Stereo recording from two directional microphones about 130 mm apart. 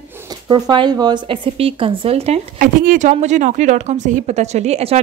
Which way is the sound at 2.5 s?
90° right.